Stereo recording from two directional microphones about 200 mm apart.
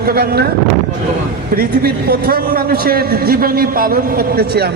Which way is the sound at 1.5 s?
50° right (ahead or behind).